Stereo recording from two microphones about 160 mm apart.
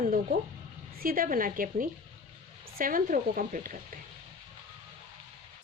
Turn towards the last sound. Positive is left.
turn(degrees=-55)  # may be behind; listen again after turning